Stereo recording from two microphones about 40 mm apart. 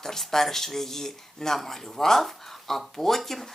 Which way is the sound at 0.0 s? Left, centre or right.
Centre.